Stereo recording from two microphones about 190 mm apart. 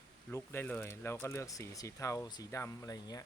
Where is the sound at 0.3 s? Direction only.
10° left (ahead or behind).